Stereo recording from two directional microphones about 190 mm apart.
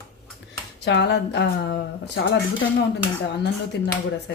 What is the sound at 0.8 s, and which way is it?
Speech, 65° left (ahead or behind).